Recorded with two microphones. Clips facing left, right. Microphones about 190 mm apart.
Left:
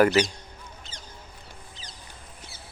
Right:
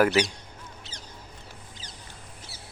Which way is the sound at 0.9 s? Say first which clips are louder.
Right 1 dB; 70° right (ahead or behind).